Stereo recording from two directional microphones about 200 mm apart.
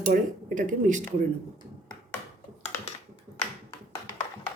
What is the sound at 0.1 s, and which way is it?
Speech, 45° right (ahead or behind).